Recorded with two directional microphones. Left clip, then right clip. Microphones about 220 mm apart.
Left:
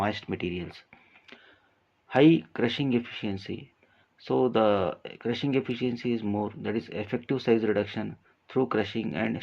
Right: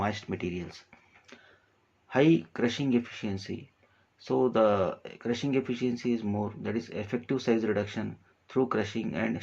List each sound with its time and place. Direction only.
0.0 s speech: 35° left (ahead or behind)